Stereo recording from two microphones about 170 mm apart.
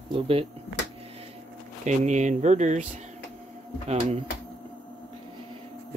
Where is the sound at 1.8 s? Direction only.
45° right (ahead or behind).